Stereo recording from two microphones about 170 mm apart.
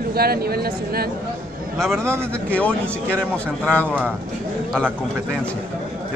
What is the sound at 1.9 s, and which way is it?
Speech, 15° right (ahead or behind).